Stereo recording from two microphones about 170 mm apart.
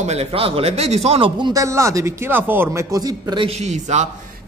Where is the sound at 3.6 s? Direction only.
45° right (ahead or behind).